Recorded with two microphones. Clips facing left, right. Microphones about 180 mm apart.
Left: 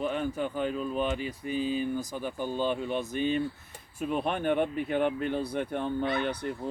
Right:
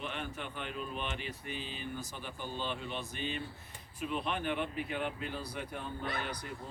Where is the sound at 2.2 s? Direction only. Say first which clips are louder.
Left 10 dB; 45° left (ahead or behind).